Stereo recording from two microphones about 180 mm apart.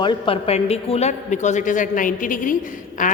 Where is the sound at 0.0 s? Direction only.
30° left (ahead or behind).